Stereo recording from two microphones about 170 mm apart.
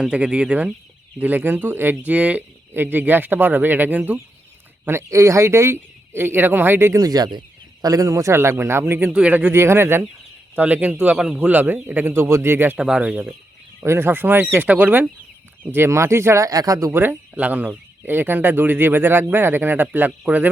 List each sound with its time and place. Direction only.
0.0 s speech: 5° right (ahead or behind)